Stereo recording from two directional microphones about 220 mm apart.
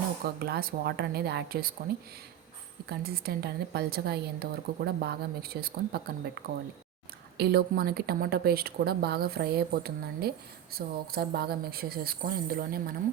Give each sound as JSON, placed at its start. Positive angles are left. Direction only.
{"t": 0.3, "sound": "speech", "side_deg": -45}
{"t": 2.9, "sound": "speech", "side_deg": -45}
{"t": 7.3, "sound": "speech", "side_deg": -45}